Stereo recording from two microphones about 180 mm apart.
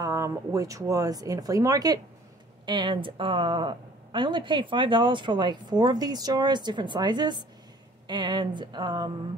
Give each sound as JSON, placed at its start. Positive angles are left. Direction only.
{"t": 0.0, "sound": "a woman's voice", "side_deg": -20}